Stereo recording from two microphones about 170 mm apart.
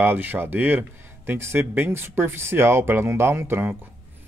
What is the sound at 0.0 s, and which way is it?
Speech, 10° right (ahead or behind).